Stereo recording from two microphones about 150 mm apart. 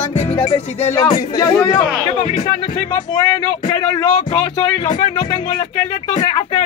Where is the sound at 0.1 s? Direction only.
50° left (ahead or behind).